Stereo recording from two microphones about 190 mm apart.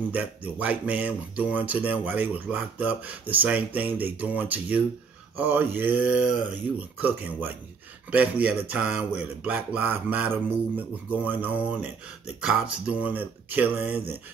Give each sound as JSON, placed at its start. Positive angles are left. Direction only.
{"t": 0.1, "sound": "speech", "side_deg": -10}